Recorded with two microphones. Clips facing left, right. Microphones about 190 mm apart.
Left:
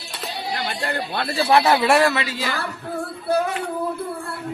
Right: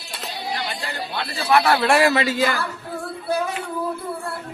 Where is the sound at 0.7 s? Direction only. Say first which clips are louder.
Left 3 dB; 55° left (ahead or behind).